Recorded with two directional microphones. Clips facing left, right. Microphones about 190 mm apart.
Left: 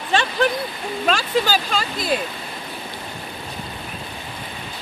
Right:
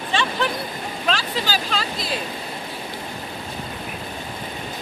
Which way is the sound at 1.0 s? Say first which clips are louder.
Left 5 dB; 50° left (ahead or behind).